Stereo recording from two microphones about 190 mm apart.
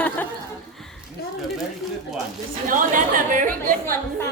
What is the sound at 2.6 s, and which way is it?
Speech, 45° right (ahead or behind).